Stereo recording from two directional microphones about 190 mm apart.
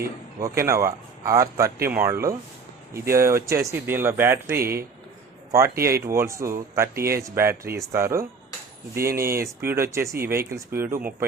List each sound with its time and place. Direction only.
0.0 s speech: 15° right (ahead or behind)
5.6 s speech: 50° right (ahead or behind)
5.9 s speech: 15° right (ahead or behind)